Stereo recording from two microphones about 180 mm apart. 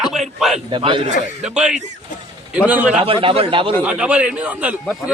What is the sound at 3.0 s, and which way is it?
Speech, 30° right (ahead or behind).